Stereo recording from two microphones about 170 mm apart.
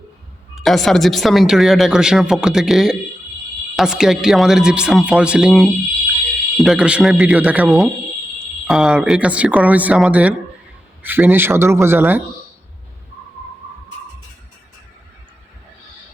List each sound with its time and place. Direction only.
0.5 s speech: centre (ahead or behind)